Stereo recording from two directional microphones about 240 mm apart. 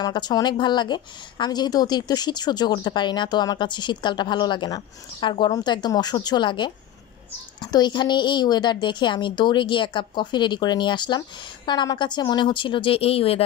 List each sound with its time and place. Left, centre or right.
0.0 s a woman's voice: centre